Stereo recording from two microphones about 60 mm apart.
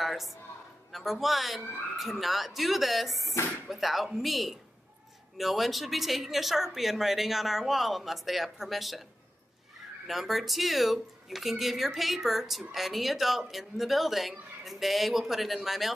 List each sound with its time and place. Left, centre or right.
0.0 s a sound: centre
0.9 s speech: centre
10.0 s speech: centre